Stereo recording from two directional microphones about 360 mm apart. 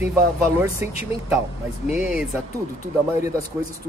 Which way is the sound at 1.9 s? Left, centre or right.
Centre.